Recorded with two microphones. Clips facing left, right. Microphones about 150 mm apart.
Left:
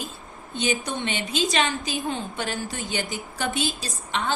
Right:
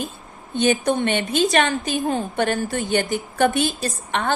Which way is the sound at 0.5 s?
55° right (ahead or behind).